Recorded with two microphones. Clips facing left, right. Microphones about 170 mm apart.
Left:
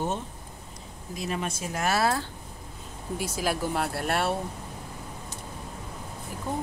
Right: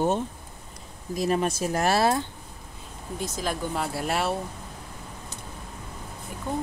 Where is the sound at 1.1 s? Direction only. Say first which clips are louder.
Right 7 dB; 40° right (ahead or behind).